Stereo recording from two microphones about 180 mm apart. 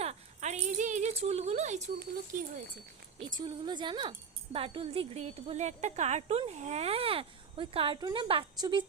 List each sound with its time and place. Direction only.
0.0 s a sound: 35° right (ahead or behind)
2.0 s speech: 50° right (ahead or behind)
3.3 s a woman's voice: 25° right (ahead or behind)